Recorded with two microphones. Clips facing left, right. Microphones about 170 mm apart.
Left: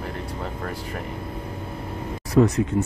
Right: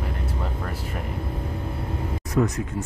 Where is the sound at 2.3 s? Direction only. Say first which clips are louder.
Left 6 dB; 30° left (ahead or behind).